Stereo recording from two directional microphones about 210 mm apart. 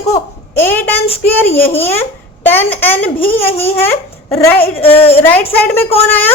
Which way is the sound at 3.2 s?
30° left (ahead or behind).